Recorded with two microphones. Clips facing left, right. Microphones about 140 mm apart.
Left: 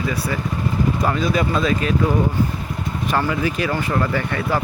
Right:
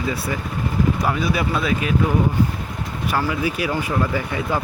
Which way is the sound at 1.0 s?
10° right (ahead or behind).